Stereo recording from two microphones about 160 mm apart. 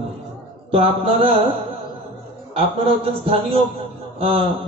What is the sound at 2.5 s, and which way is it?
A man's voice, 35° right (ahead or behind).